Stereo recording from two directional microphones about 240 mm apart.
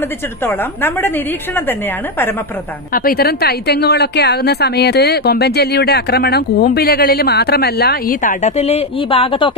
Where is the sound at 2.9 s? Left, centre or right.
Left.